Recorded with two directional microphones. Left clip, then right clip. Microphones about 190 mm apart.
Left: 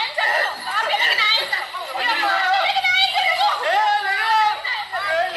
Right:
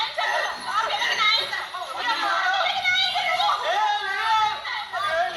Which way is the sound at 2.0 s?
20° left (ahead or behind).